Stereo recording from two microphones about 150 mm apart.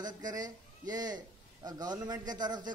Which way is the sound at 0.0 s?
25° right (ahead or behind).